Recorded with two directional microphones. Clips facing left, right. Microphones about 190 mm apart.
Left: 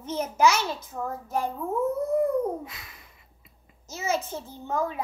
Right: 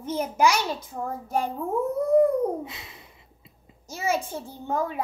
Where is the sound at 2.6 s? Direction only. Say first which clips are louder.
Right 4 dB; 25° right (ahead or behind).